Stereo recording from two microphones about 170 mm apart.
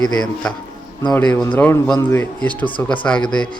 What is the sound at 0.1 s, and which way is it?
A man's voice, 5° left (ahead or behind).